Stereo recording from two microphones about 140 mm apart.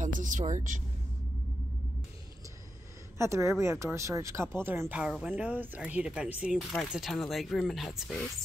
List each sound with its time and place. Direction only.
0.0 s speech: 70° right (ahead or behind)
3.2 s speech: 20° right (ahead or behind); by 8.3 s 5° left (ahead or behind)